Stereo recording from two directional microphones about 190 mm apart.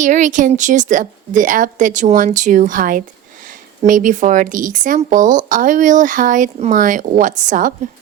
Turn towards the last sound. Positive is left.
turn(degrees=-40)  # may be behind; listen again after turning